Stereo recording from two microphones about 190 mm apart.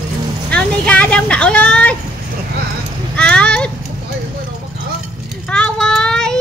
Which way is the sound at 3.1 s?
5° left (ahead or behind).